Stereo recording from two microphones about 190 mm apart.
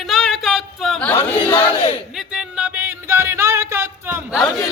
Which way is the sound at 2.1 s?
5° right (ahead or behind).